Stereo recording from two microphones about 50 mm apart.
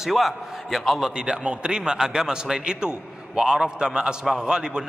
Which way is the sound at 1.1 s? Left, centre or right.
Centre.